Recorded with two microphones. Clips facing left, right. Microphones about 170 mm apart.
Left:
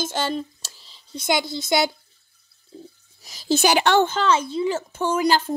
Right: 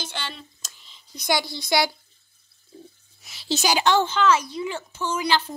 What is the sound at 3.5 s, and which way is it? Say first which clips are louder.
Speech: left 3 dB; 60° left (ahead or behind).